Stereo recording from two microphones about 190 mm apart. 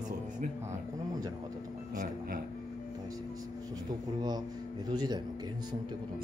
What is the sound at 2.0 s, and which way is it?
Speech, 50° right (ahead or behind).